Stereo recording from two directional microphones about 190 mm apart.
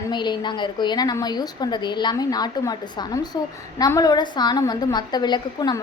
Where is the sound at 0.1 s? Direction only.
25° left (ahead or behind).